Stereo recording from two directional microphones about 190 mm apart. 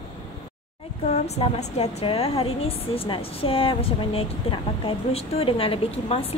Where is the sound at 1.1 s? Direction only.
35° left (ahead or behind).